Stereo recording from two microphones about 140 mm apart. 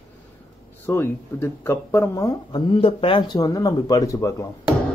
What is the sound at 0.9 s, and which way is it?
Speech, 15° left (ahead or behind).